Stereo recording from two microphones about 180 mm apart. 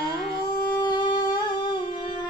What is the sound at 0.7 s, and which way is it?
Music, 25° left (ahead or behind).